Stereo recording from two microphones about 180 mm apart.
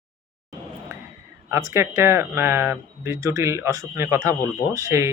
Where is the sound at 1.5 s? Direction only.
15° right (ahead or behind).